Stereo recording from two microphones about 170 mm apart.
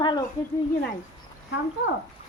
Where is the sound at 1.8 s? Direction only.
90° left.